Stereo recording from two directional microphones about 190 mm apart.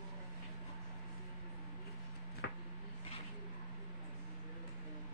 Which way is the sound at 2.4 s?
65° left (ahead or behind).